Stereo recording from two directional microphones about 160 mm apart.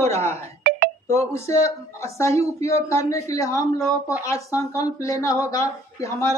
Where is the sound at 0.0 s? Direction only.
15° left (ahead or behind).